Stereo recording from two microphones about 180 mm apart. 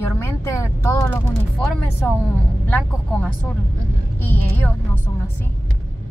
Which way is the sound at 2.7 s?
10° left (ahead or behind).